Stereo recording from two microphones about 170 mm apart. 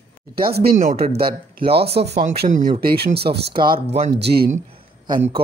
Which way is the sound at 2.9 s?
70° right (ahead or behind).